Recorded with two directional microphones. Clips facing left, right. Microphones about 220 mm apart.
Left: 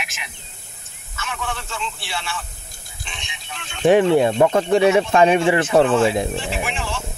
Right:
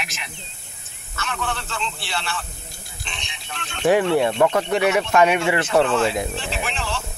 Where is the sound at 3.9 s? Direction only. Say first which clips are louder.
Left 3 dB; 20° left (ahead or behind).